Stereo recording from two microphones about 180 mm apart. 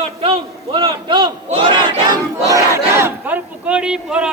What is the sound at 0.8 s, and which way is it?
Battle cry, 25° right (ahead or behind).